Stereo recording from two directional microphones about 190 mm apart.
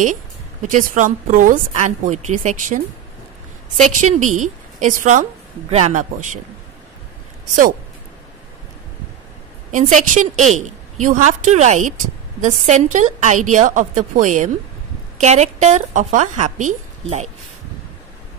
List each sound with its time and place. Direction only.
0.0 s a woman's voice: 40° right (ahead or behind)
9.7 s a woman's voice: 40° right (ahead or behind)